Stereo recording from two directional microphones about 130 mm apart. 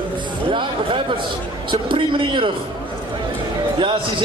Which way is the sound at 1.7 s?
40° right (ahead or behind).